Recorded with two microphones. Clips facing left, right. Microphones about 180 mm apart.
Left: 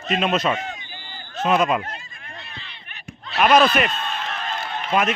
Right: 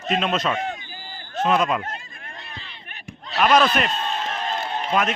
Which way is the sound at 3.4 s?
10° left (ahead or behind).